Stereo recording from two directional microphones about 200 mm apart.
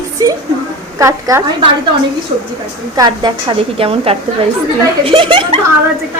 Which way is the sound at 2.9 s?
20° right (ahead or behind).